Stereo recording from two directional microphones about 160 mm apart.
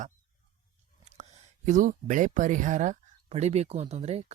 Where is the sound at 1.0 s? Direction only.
45° right (ahead or behind).